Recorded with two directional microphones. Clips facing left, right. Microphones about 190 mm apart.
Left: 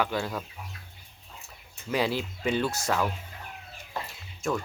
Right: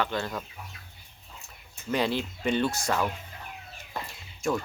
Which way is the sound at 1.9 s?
5° left (ahead or behind).